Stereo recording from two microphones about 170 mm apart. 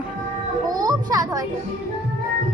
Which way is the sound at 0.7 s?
20° right (ahead or behind).